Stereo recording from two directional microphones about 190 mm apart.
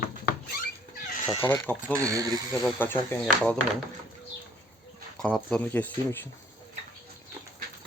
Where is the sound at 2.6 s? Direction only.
10° left (ahead or behind).